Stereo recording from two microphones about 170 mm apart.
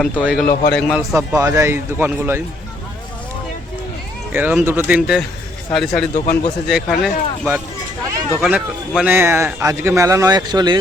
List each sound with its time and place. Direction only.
0.0 s speech: 5° right (ahead or behind)
0.9 s speech: 5° right (ahead or behind)
4.3 s speech: 10° right (ahead or behind)
6.1 s speech: 45° left (ahead or behind)
6.7 s speech: centre (ahead or behind); by 10.8 s 25° right (ahead or behind)